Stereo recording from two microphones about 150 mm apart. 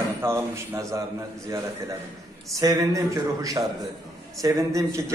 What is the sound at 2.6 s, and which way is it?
Speech, 20° right (ahead or behind).